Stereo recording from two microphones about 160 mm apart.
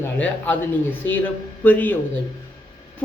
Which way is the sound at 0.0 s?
10° left (ahead or behind).